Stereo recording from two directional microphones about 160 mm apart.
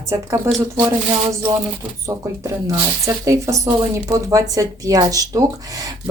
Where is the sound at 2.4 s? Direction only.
20° right (ahead or behind).